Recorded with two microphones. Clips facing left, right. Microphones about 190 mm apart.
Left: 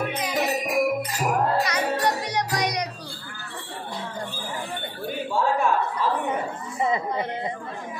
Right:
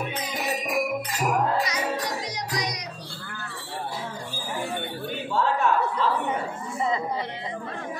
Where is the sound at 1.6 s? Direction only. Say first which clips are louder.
Left 3 dB; 65° left (ahead or behind).